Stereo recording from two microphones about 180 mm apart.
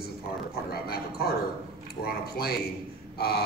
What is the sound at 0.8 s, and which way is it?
Speech, 60° left (ahead or behind).